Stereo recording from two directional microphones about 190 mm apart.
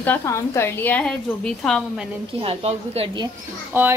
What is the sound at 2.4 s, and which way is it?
Speech, 30° right (ahead or behind).